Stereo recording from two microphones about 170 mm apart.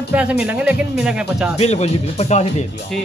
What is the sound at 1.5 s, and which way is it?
Speech, 40° left (ahead or behind).